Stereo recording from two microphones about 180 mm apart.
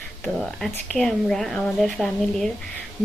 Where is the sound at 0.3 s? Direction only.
Centre (ahead or behind).